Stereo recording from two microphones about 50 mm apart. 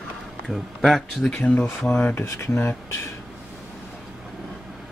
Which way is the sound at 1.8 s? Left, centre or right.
Left.